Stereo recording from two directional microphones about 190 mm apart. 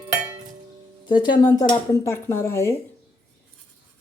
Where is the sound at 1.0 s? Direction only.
25° left (ahead or behind).